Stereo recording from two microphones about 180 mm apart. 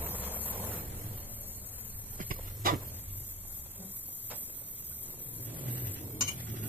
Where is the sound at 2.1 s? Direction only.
50° right (ahead or behind).